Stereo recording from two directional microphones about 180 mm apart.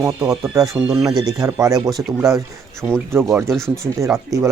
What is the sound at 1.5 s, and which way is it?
Speech, 20° right (ahead or behind).